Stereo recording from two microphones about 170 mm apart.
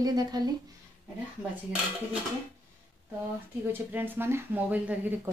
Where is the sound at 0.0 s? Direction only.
25° right (ahead or behind).